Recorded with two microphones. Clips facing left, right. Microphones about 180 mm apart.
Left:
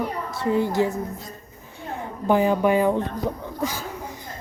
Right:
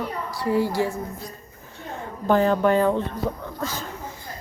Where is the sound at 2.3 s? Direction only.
10° left (ahead or behind).